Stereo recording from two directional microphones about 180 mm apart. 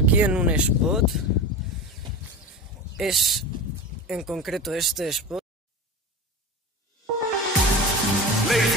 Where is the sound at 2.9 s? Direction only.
Centre (ahead or behind).